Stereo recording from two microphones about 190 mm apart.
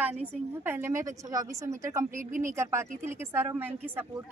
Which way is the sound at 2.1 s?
45° right (ahead or behind).